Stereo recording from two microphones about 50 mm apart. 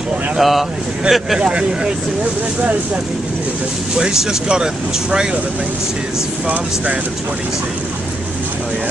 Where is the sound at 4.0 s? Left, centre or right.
Centre.